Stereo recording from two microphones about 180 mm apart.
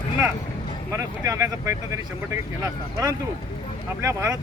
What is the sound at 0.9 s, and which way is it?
Speech, 15° right (ahead or behind).